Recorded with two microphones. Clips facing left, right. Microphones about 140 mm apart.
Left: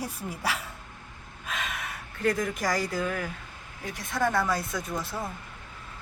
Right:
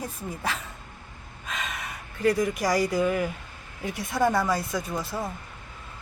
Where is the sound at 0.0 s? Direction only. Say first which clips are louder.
Even; 10° left (ahead or behind).